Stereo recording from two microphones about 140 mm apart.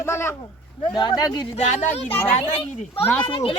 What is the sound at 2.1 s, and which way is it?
Speech, 15° left (ahead or behind).